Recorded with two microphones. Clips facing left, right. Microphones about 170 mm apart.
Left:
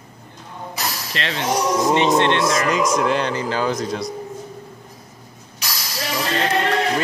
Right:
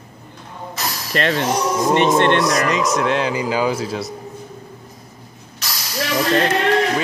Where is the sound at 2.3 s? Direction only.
25° left (ahead or behind).